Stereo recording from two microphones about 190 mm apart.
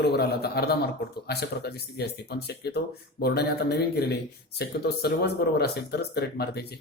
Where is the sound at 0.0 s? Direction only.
60° left (ahead or behind).